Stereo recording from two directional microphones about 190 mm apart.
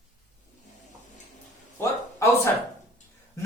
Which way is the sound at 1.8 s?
15° left (ahead or behind).